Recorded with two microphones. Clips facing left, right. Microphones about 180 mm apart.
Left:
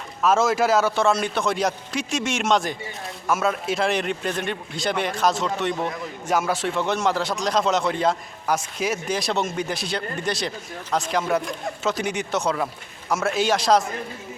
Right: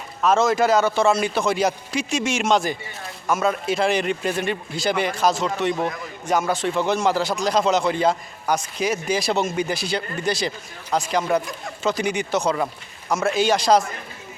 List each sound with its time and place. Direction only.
0.2 s a man's voice: 5° left (ahead or behind)